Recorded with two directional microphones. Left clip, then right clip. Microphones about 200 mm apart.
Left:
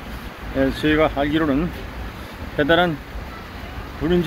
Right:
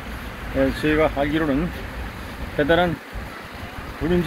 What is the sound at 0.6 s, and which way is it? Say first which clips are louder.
Speech: left 1 dB; 5° left (ahead or behind).